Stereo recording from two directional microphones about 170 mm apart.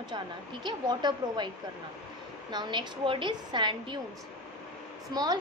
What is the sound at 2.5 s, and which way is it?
A woman's voice, 25° right (ahead or behind).